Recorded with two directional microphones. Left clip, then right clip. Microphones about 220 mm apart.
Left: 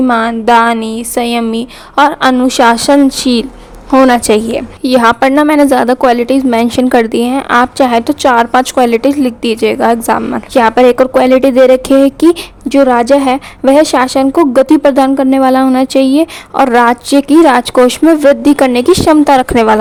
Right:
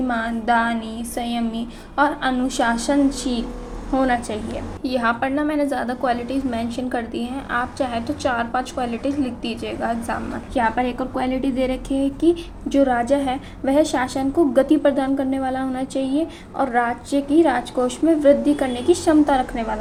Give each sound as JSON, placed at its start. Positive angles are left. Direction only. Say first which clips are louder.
{"t": 0.1, "sound": "a woman's voice", "louder": "left 11 dB", "side_deg": 45}